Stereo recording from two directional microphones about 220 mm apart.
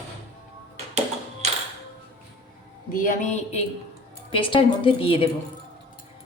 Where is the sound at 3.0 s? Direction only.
35° left (ahead or behind).